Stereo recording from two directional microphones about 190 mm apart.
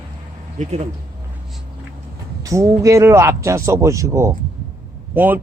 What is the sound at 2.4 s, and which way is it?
A man's voice, 15° right (ahead or behind).